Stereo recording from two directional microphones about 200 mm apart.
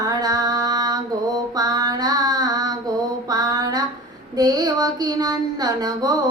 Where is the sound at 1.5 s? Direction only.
20° right (ahead or behind).